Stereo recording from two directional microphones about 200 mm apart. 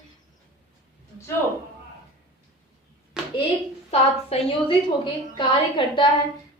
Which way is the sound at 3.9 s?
25° left (ahead or behind).